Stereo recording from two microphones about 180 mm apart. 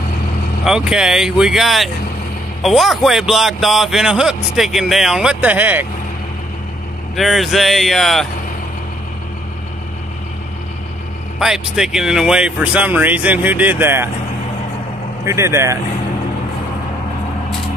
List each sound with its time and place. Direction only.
0.7 s a man's voice: 5° right (ahead or behind)
7.2 s a man's voice: centre (ahead or behind)
11.3 s speech: centre (ahead or behind)
15.2 s speech: 15° right (ahead or behind)